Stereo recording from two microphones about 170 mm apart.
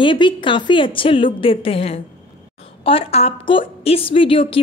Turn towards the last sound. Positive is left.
turn(degrees=30)  # may be behind; listen again after turning